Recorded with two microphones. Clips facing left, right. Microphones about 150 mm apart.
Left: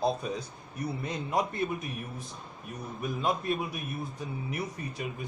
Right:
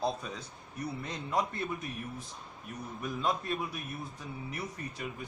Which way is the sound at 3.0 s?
15° left (ahead or behind).